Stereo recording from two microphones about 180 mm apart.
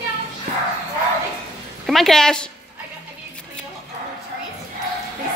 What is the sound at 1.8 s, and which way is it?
Speech, centre (ahead or behind).